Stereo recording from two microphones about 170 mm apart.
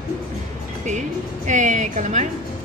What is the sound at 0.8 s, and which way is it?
A woman's voice, 45° right (ahead or behind).